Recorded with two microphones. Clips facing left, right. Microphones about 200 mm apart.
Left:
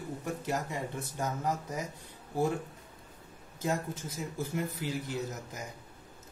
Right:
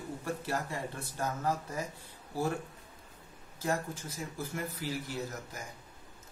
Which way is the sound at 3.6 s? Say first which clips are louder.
Left 1 dB; 20° left (ahead or behind).